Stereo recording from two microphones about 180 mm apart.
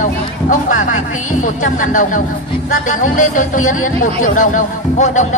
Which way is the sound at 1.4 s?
45° left (ahead or behind).